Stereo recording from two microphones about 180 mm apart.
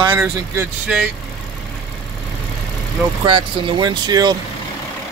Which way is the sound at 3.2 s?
25° right (ahead or behind).